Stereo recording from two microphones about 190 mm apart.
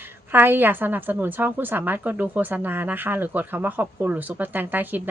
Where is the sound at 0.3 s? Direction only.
10° right (ahead or behind).